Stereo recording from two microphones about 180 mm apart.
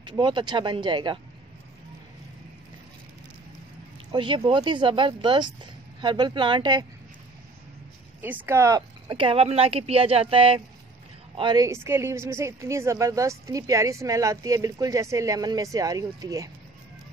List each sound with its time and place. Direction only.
0.0 s speech: 25° right (ahead or behind)
4.1 s speech: 30° right (ahead or behind)
8.2 s a woman's voice: 10° right (ahead or behind)